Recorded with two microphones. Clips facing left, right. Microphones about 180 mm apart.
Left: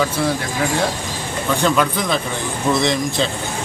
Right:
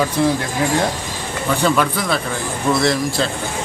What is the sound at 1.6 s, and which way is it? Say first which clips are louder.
Speech: even; 5° right (ahead or behind).